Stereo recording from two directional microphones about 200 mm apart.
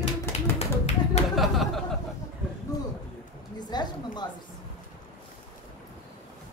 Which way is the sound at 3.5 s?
20° left (ahead or behind).